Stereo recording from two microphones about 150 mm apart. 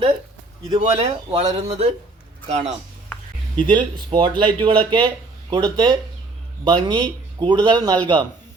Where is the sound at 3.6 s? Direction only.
30° right (ahead or behind).